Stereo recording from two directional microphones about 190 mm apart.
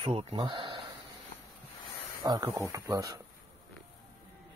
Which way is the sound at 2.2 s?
20° right (ahead or behind).